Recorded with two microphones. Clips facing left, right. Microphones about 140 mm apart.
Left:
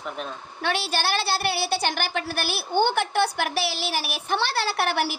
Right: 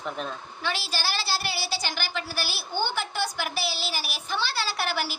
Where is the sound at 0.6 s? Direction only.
60° left (ahead or behind).